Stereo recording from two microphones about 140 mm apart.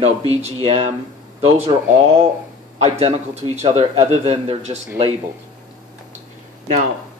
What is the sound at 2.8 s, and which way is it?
A man's voice, 50° right (ahead or behind).